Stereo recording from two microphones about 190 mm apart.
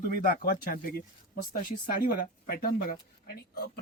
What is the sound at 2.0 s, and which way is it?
Speech, 50° left (ahead or behind).